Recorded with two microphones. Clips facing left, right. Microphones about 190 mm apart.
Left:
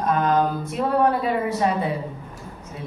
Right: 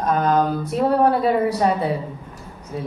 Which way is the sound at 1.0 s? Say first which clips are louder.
Right 3 dB; 35° right (ahead or behind).